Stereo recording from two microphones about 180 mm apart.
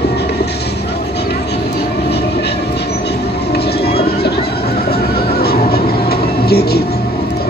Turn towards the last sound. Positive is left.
turn(degrees=60)  # may be behind; listen again after turning